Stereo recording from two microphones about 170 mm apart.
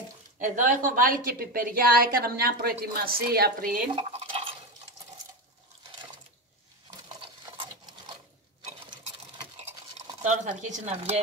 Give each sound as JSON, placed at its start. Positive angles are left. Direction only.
{"t": 0.4, "sound": "a woman's voice", "side_deg": -50}
{"t": 3.9, "sound": "stir", "side_deg": -30}
{"t": 9.6, "sound": "toothbrush", "side_deg": -40}